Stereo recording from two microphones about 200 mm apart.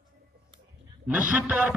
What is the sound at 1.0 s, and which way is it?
Speech, 5° right (ahead or behind).